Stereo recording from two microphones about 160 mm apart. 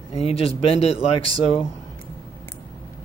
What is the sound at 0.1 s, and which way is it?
Speech, 40° left (ahead or behind).